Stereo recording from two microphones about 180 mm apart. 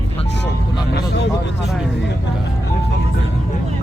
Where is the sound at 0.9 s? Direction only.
65° left (ahead or behind).